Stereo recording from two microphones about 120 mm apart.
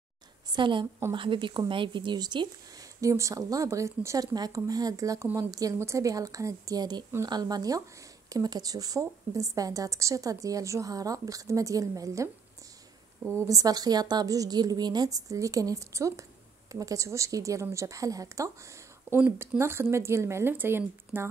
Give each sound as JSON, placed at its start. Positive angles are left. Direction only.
{"t": 0.5, "sound": "a woman's voice", "side_deg": -40}
{"t": 3.0, "sound": "speech", "side_deg": -25}
{"t": 13.3, "sound": "speech", "side_deg": -25}